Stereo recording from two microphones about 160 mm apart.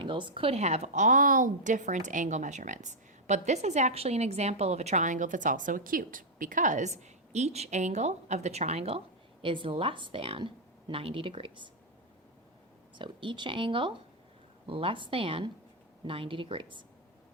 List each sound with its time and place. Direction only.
0.0 s a woman's voice: 30° right (ahead or behind)
13.0 s speech: 30° right (ahead or behind)